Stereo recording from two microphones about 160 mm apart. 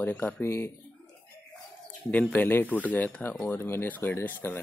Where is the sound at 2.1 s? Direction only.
10° left (ahead or behind).